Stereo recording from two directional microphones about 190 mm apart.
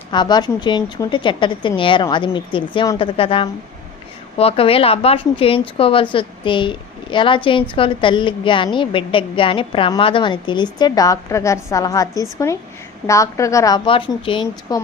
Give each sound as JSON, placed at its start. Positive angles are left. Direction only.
{"t": 0.1, "sound": "a woman's voice", "side_deg": 25}